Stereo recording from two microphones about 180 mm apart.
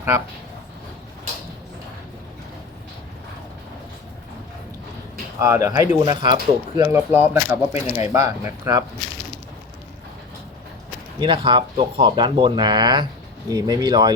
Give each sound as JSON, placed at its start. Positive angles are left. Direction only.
{"t": 5.4, "sound": "speech", "side_deg": -15}
{"t": 11.2, "sound": "speech", "side_deg": -25}